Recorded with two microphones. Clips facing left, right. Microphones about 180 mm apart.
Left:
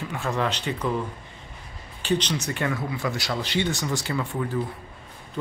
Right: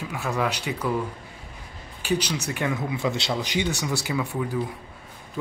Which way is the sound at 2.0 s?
10° right (ahead or behind).